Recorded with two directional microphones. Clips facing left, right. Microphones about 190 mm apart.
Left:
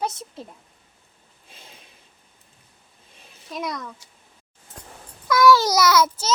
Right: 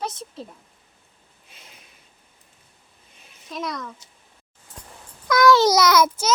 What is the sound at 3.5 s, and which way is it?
Speech, 10° left (ahead or behind).